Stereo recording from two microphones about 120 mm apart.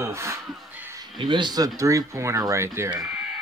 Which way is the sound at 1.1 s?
40° right (ahead or behind).